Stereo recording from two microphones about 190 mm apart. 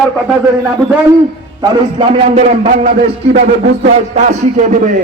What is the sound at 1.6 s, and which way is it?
A man's voice, 25° right (ahead or behind).